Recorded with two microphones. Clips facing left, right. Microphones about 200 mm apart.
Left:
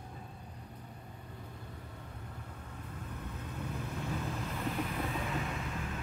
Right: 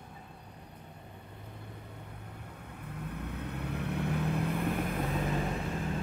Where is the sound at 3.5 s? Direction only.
65° right (ahead or behind).